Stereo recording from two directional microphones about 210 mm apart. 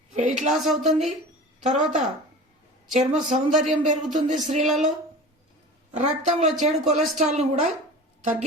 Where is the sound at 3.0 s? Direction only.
35° right (ahead or behind).